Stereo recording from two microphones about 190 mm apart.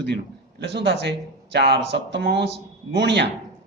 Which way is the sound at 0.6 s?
70° right (ahead or behind).